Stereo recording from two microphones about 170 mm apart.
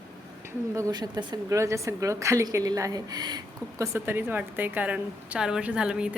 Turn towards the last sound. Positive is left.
turn(degrees=-5)  # may be behind; listen again after turning